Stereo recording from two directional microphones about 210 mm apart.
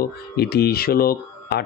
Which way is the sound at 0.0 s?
50° left (ahead or behind).